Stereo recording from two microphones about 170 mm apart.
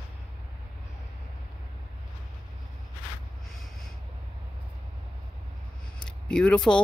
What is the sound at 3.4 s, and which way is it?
Snort, centre (ahead or behind).